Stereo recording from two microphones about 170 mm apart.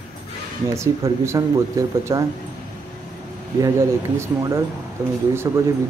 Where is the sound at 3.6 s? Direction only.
15° right (ahead or behind).